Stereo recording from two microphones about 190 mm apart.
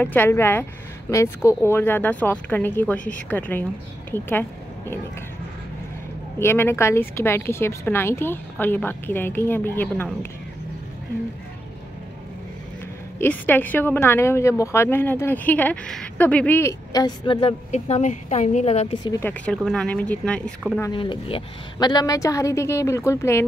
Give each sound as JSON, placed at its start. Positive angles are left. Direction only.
{"t": 0.0, "sound": "a woman's voice", "side_deg": 10}
{"t": 4.1, "sound": "a sound", "side_deg": 10}
{"t": 6.4, "sound": "a woman's voice", "side_deg": 10}
{"t": 13.2, "sound": "a woman's voice", "side_deg": 10}
{"t": 19.1, "sound": "a woman's voice", "side_deg": 10}
{"t": 20.9, "sound": "a woman's voice", "side_deg": 25}